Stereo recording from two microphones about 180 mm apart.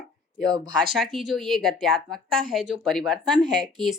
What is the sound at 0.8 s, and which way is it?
Speech, centre (ahead or behind).